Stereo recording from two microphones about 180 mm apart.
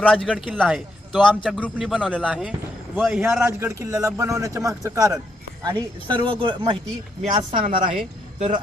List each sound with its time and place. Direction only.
0.3 s a man's voice: 5° right (ahead or behind); by 6.6 s 30° right (ahead or behind)
7.3 s a man's voice: 45° right (ahead or behind)